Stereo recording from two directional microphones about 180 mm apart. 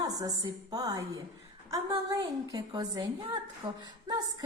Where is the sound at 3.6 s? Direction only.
20° right (ahead or behind).